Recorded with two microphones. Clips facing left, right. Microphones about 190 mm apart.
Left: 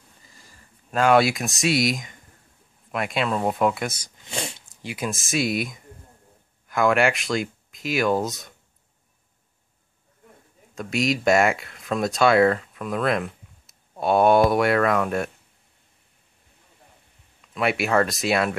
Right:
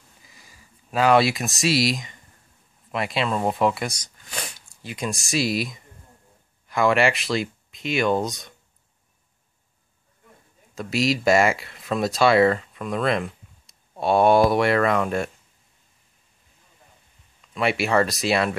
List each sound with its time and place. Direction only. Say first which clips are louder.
0.2 s speech: even; 5° right (ahead or behind)
4.2 s a sound: left 4 dB; 25° left (ahead or behind)
4.8 s speech: even; 5° left (ahead or behind)
10.7 s speech: right 1 dB; centre (ahead or behind)
17.6 s speech: even; centre (ahead or behind)